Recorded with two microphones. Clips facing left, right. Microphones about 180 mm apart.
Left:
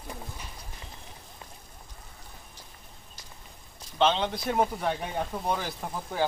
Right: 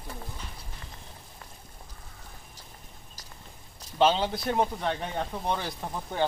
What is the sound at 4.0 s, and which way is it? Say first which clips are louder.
Speech: right 1 dB; 5° right (ahead or behind).